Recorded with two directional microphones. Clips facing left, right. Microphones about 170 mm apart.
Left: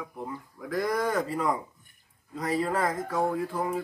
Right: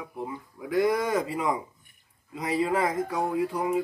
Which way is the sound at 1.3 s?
Centre (ahead or behind).